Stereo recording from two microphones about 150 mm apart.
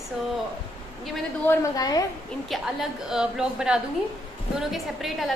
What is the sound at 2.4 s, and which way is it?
A woman's voice, centre (ahead or behind).